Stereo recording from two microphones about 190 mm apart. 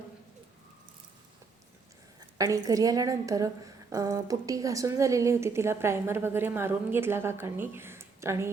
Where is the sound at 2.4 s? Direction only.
20° right (ahead or behind).